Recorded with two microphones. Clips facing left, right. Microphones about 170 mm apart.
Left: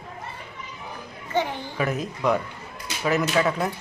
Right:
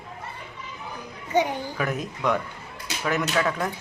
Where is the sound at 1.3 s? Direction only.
15° right (ahead or behind).